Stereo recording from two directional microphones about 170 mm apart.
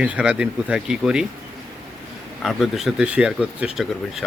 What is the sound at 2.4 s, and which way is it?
Speech, centre (ahead or behind).